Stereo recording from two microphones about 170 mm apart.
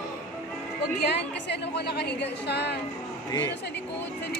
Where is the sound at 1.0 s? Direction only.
80° left.